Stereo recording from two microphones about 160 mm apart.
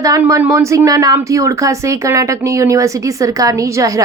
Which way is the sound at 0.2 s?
15° right (ahead or behind).